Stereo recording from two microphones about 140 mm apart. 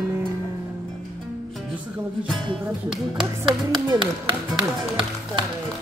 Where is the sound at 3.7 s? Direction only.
35° right (ahead or behind).